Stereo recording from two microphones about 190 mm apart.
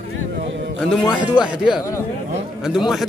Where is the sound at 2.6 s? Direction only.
Centre (ahead or behind).